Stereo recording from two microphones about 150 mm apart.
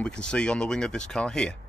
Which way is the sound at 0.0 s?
5° left (ahead or behind).